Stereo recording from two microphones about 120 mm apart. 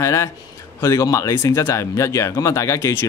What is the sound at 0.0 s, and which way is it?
A man's voice, 25° left (ahead or behind).